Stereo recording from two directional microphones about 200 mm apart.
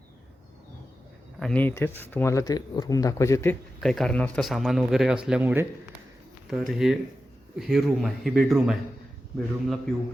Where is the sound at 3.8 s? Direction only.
Centre (ahead or behind).